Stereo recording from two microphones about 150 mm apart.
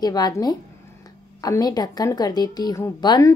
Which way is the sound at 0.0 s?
25° left (ahead or behind).